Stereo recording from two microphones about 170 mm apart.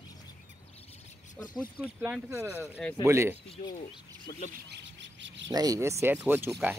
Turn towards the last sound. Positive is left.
turn(degrees=-10)  # may be behind; listen again after turning